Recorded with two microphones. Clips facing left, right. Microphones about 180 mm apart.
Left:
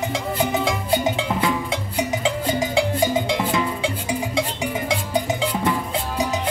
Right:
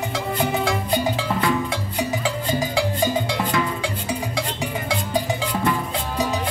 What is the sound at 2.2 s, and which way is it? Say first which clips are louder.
Music: left 2 dB; 20° left (ahead or behind).